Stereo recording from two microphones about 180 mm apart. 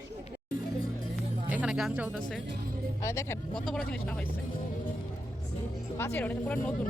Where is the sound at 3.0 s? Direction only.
15° left (ahead or behind).